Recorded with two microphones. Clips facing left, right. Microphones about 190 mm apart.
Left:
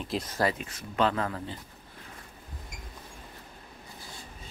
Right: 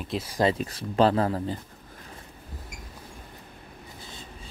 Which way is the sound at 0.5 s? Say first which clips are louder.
Right 6 dB; 35° right (ahead or behind).